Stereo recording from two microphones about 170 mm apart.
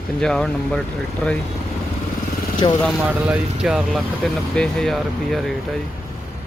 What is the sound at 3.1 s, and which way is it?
Speech, 10° right (ahead or behind).